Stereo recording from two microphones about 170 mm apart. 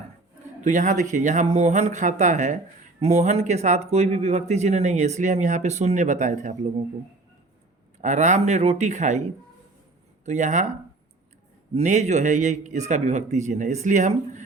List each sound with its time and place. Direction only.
0.6 s a man's voice: 45° right (ahead or behind)
8.0 s a man's voice: 45° right (ahead or behind)
10.2 s a man's voice: 45° right (ahead or behind)
11.7 s a man's voice: 45° right (ahead or behind)